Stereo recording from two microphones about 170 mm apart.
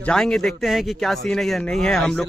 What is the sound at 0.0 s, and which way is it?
A man's voice, 5° left (ahead or behind).